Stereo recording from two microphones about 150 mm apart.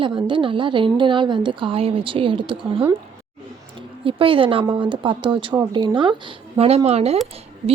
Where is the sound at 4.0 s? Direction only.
35° right (ahead or behind).